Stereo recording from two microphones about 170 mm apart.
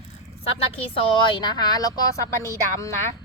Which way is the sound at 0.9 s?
30° left (ahead or behind).